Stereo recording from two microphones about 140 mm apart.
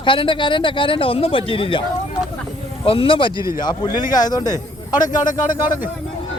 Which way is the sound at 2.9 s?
40° left (ahead or behind).